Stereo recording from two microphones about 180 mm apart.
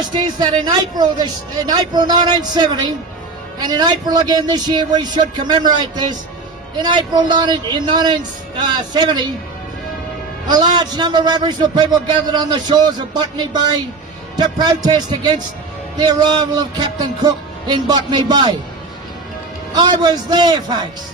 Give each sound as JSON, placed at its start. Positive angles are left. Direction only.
{"t": 0.1, "sound": "speech", "side_deg": -25}
{"t": 10.5, "sound": "speech", "side_deg": -25}
{"t": 19.7, "sound": "speech", "side_deg": -25}